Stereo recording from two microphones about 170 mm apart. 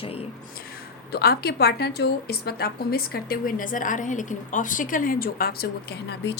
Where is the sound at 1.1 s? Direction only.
65° left (ahead or behind).